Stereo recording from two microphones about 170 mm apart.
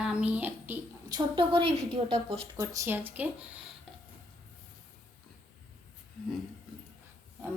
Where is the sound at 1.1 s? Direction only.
25° right (ahead or behind).